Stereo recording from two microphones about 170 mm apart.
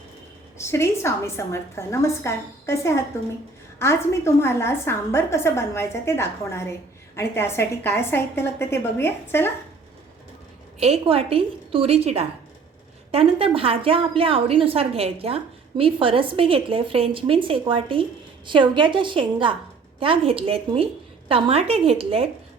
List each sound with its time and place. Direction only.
0.6 s a woman's voice: 15° left (ahead or behind)
10.8 s a woman's voice: 40° right (ahead or behind)